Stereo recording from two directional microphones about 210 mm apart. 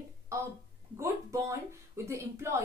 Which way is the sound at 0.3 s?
15° right (ahead or behind).